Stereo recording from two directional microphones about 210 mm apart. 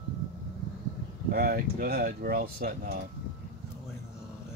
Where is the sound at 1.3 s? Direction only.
45° right (ahead or behind).